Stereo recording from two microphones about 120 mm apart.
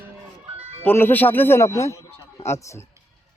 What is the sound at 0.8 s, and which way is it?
Speech, 15° left (ahead or behind).